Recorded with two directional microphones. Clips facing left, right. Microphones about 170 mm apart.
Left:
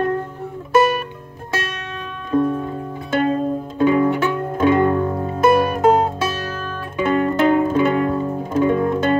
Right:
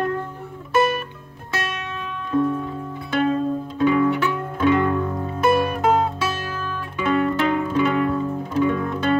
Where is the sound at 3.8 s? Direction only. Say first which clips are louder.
Left 3 dB; 40° left (ahead or behind).